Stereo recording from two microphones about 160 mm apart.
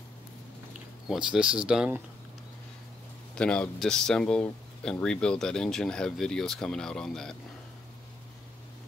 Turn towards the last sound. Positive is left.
turn(degrees=5)  # may be behind; listen again after turning